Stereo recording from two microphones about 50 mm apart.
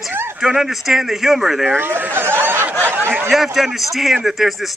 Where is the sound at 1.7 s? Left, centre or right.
Right.